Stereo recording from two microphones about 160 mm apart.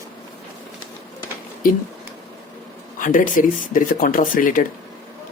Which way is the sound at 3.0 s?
55° left (ahead or behind).